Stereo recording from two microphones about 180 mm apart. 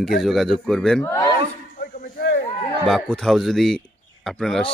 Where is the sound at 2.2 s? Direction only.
60° left (ahead or behind).